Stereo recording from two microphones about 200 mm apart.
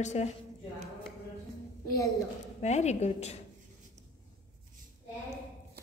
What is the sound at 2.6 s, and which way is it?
Speech, 35° left (ahead or behind).